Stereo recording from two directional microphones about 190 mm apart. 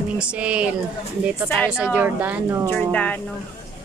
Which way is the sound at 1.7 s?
5° right (ahead or behind).